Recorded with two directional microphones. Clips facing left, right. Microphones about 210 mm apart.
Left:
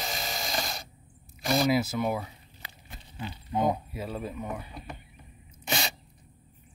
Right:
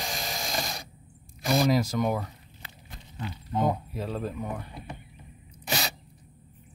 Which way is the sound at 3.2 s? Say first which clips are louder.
Even; 10° left (ahead or behind).